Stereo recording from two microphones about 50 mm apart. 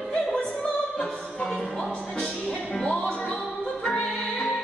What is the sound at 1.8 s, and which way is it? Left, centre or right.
Music, left.